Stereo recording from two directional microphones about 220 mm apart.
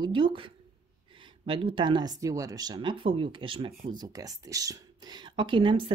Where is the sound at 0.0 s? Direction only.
20° right (ahead or behind).